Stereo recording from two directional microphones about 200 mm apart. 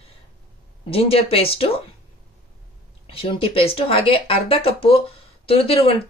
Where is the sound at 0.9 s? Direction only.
30° left (ahead or behind).